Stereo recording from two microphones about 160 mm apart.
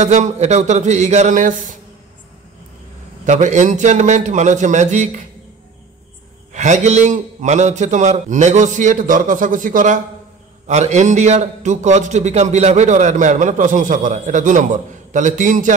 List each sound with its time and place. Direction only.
0.0 s a man's voice: 45° right (ahead or behind)
3.3 s a man's voice: 50° right (ahead or behind)
6.5 s a man's voice: 45° right (ahead or behind)
10.7 s a man's voice: 45° right (ahead or behind)